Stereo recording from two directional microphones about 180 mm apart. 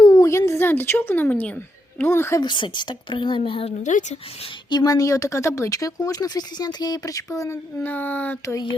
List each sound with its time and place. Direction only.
0.0 s a sound: 20° left (ahead or behind)
2.0 s a child's voice: 15° left (ahead or behind)
2.4 s a child's voice: 25° left (ahead or behind); by 8.5 s 10° left (ahead or behind)